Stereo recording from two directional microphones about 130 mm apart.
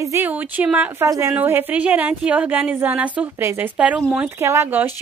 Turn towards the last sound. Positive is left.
turn(degrees=-15)  # may be behind; listen again after turning